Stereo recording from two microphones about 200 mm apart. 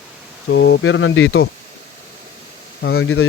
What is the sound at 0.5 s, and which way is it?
Speech, 60° left (ahead or behind).